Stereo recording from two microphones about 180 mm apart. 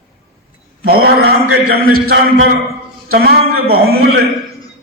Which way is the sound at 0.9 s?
60° right (ahead or behind).